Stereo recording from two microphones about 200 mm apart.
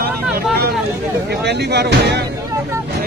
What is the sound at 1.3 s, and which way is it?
Speech, 55° right (ahead or behind).